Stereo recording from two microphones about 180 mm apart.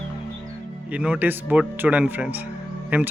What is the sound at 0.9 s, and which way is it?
Speech, 5° right (ahead or behind).